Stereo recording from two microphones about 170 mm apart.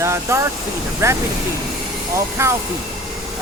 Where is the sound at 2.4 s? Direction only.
15° right (ahead or behind).